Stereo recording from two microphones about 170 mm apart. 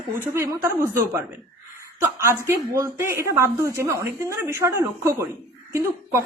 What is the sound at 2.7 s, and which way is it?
Speech, 15° right (ahead or behind).